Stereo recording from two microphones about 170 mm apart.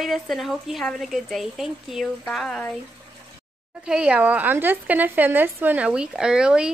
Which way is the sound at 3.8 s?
5° right (ahead or behind).